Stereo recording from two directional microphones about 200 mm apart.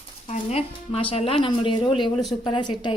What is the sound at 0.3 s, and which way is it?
A woman's voice, 30° left (ahead or behind).